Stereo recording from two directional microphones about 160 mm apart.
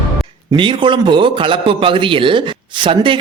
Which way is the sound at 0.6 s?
30° right (ahead or behind).